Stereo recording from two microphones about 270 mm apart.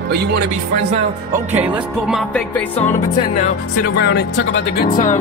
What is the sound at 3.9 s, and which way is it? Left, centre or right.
Music, left.